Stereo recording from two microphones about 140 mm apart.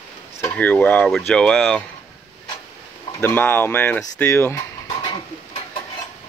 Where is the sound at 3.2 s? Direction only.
15° left (ahead or behind).